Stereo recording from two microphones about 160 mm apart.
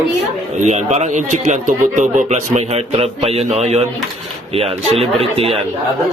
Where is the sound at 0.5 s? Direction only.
45° right (ahead or behind).